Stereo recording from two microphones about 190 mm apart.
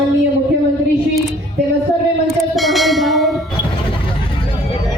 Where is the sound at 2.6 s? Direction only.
Centre (ahead or behind).